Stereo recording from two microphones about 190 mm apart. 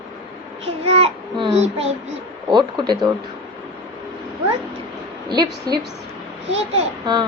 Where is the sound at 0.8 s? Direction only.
30° right (ahead or behind).